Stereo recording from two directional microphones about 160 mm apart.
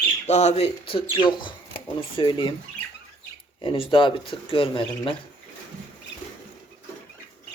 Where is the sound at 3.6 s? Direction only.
35° left (ahead or behind).